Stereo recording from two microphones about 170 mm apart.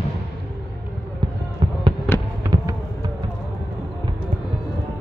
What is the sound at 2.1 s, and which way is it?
Fireworks, 15° left (ahead or behind).